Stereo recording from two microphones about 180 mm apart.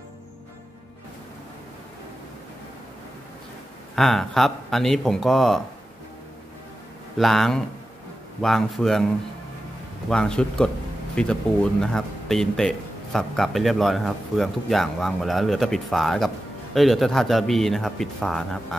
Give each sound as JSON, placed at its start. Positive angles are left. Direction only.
{"t": 3.9, "sound": "speech", "side_deg": 0}
{"t": 7.2, "sound": "speech", "side_deg": 0}